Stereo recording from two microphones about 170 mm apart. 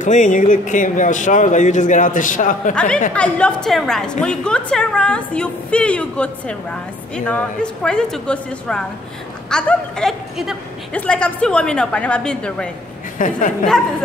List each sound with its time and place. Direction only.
0.0 s speech: 45° left (ahead or behind)
2.7 s a woman's voice: 5° left (ahead or behind)
13.2 s speech: 50° left (ahead or behind)